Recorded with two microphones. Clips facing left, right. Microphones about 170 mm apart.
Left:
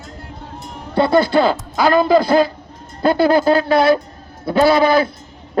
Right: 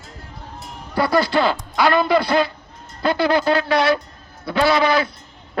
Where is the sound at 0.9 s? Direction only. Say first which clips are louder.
Left 4 dB; 25° left (ahead or behind).